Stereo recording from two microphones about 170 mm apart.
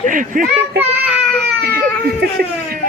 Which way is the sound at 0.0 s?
50° right (ahead or behind).